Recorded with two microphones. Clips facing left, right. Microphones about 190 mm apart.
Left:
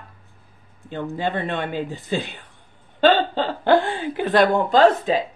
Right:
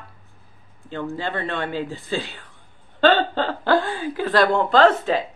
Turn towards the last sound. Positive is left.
turn(degrees=15)  # may be behind; listen again after turning